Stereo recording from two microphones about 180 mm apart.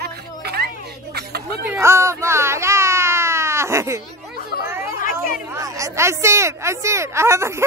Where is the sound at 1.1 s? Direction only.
60° right (ahead or behind).